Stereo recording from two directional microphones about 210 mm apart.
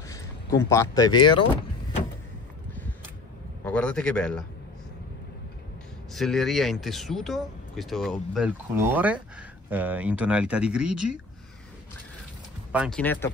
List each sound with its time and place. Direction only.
0.1 s speech: 15° left (ahead or behind)
3.6 s speech: 5° left (ahead or behind)
6.1 s speech: centre (ahead or behind)
12.7 s speech: 5° right (ahead or behind)
13.0 s speech: 10° left (ahead or behind)